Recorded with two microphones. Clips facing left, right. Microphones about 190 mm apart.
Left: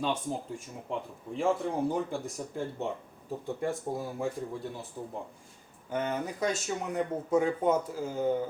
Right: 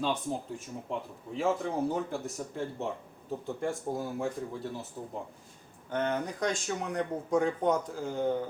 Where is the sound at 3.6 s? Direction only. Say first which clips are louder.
Even; centre (ahead or behind).